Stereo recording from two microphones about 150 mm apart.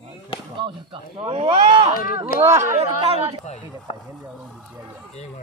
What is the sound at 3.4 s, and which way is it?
Speech, 45° left (ahead or behind).